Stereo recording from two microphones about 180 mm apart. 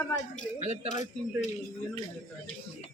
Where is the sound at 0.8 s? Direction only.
40° left (ahead or behind).